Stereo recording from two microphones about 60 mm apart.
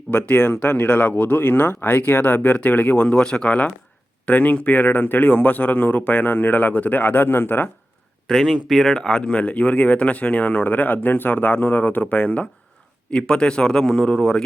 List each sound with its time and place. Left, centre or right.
0.1 s speech: left
8.3 s a man's voice: centre